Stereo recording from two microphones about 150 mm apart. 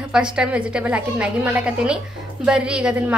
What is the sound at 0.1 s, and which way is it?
A woman's voice, 5° right (ahead or behind).